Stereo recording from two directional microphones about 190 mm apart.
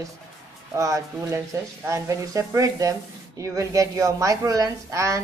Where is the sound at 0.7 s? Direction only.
15° right (ahead or behind).